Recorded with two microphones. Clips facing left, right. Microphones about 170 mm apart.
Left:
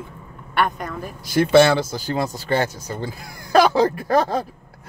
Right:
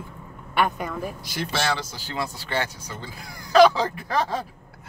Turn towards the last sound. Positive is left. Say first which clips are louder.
# left 6 dB
turn(degrees=45)  # may be behind; listen again after turning